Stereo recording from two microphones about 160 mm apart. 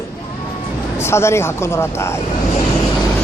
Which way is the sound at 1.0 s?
15° left (ahead or behind).